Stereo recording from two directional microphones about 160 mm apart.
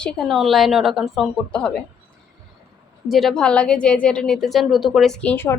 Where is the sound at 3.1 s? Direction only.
Centre (ahead or behind).